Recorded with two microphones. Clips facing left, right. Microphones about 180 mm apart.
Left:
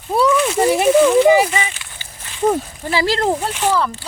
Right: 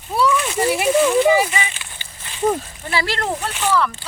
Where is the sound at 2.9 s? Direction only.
35° left (ahead or behind).